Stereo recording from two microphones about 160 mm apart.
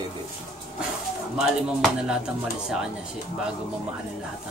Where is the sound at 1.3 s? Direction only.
Centre (ahead or behind).